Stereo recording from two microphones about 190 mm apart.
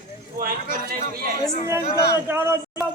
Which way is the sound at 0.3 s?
50° right (ahead or behind).